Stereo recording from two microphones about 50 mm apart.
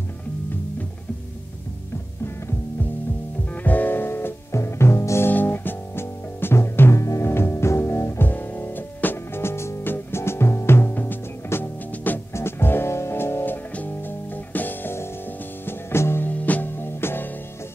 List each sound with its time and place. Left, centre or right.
3.6 s music: left
4.5 s music: left
5.3 s music: left
7.2 s music: left
8.2 s music: left
12.3 s music: left
13.7 s music: left
15.6 s music: left
16.3 s music: left
16.7 s music: left